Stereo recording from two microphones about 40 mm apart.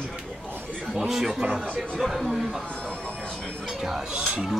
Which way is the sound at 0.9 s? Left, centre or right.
Centre.